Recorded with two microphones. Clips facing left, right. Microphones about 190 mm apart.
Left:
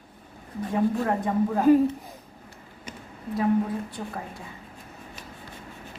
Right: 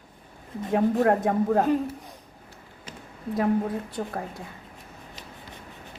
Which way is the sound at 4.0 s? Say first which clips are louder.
Right 4 dB; 50° right (ahead or behind).